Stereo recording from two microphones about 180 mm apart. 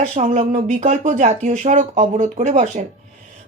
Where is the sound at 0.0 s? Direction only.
40° right (ahead or behind).